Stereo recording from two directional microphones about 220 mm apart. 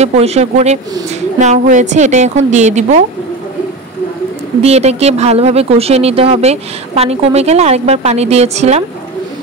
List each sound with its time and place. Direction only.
0.0 s a woman's voice: 30° right (ahead or behind)
4.6 s speech: 30° right (ahead or behind)